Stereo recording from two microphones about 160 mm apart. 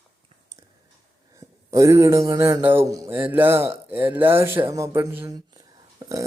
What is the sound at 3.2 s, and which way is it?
Speech, 10° right (ahead or behind).